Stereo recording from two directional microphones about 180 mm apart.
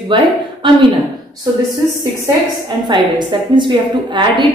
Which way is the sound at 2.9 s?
25° right (ahead or behind).